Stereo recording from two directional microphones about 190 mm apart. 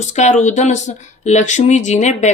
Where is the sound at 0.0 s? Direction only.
40° left (ahead or behind).